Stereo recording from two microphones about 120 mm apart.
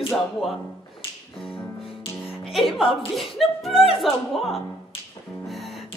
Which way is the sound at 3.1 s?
Centre (ahead or behind).